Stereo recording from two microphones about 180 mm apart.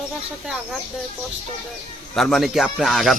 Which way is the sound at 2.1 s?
Centre (ahead or behind).